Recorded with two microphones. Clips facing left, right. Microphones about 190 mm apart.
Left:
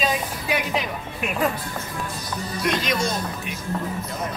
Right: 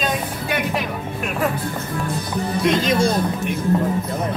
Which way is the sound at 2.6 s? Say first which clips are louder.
Right 6 dB; 30° right (ahead or behind).